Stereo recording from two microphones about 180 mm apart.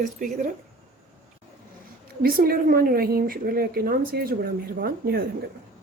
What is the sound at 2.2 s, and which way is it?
A woman's voice, 55° right (ahead or behind).